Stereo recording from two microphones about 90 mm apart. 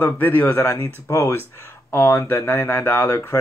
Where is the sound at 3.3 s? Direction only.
35° left (ahead or behind).